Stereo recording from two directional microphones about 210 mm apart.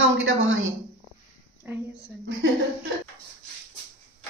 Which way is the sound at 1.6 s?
10° right (ahead or behind).